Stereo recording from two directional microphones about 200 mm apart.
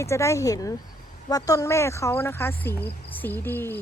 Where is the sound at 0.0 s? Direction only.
15° left (ahead or behind).